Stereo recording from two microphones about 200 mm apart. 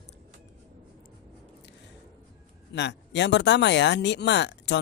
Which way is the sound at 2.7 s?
60° left (ahead or behind).